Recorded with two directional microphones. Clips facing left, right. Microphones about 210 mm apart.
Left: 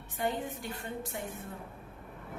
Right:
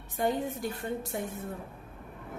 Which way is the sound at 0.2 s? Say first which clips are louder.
Right 5 dB; 40° right (ahead or behind).